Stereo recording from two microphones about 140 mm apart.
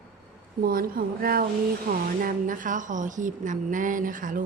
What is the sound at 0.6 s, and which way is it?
A woman's voice, 90° right.